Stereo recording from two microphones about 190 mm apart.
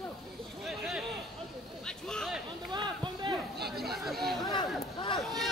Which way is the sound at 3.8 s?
Centre (ahead or behind).